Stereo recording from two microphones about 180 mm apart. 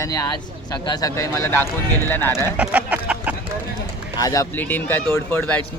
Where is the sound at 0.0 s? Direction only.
20° left (ahead or behind).